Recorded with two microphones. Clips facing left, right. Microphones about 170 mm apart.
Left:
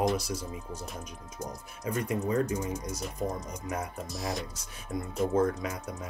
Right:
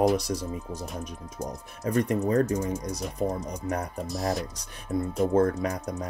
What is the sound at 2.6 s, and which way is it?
Speech, 35° right (ahead or behind).